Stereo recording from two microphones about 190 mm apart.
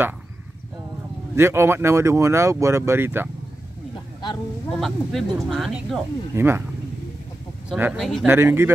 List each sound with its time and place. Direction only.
1.3 s speech: 15° right (ahead or behind)
4.7 s speech: centre (ahead or behind)
6.3 s speech: 10° right (ahead or behind)
7.7 s speech: 5° right (ahead or behind)
8.3 s speech: 10° right (ahead or behind)